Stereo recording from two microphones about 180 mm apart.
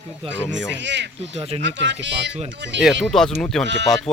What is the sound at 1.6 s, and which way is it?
Speech, 85° right.